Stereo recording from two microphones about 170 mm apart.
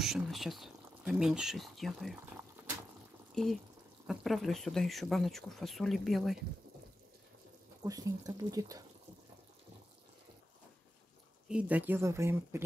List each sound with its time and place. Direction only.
0.0 s speech: centre (ahead or behind)
3.4 s speech: 5° left (ahead or behind)
7.8 s speech: 20° right (ahead or behind)
11.4 s speech: 5° right (ahead or behind)